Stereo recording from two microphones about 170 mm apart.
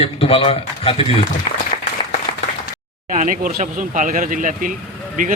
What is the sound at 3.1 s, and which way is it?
Speech, 45° right (ahead or behind).